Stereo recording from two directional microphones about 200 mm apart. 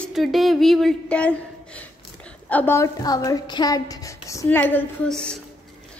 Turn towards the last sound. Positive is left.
turn(degrees=5)  # may be behind; listen again after turning